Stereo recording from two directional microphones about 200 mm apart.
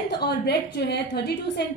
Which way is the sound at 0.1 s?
55° left (ahead or behind).